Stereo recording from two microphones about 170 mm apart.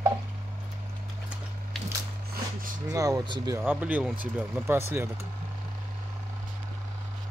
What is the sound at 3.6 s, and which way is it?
Speech, 10° right (ahead or behind).